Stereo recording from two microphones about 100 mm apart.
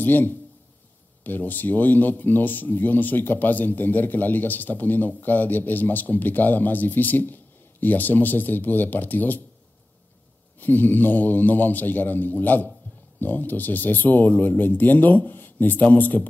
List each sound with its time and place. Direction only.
0.0 s a man's voice: 20° left (ahead or behind)
10.6 s a man's voice: 20° left (ahead or behind)